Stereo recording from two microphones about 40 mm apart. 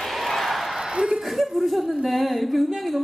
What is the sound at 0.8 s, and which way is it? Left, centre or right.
Chuckle, centre.